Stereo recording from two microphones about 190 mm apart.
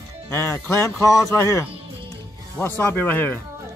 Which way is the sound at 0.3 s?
15° left (ahead or behind).